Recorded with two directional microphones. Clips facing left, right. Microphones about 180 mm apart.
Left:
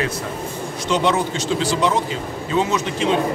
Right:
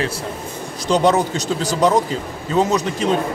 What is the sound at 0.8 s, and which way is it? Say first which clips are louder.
A man's voice: right 4 dB; 40° right (ahead or behind).